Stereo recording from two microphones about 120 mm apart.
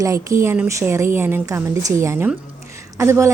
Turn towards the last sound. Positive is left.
turn(degrees=-25)  # may be behind; listen again after turning